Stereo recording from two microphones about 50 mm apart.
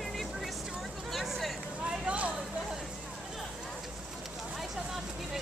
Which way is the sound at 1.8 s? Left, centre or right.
Right.